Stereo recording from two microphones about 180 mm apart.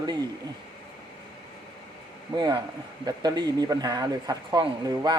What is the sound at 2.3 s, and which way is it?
Speech, 25° right (ahead or behind).